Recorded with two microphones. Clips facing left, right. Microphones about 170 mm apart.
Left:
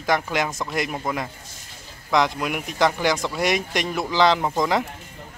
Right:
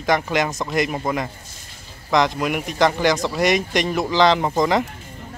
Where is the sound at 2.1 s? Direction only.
5° left (ahead or behind).